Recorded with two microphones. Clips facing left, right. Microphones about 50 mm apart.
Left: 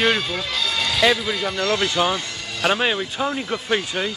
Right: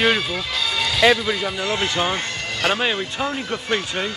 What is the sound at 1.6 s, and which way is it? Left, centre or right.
Speech, right.